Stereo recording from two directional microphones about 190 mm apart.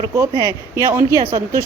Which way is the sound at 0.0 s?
20° right (ahead or behind).